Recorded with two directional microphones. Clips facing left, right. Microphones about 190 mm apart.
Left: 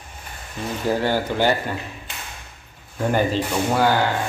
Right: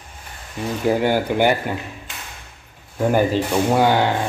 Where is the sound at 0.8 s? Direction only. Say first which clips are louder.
Right 3 dB; 15° right (ahead or behind).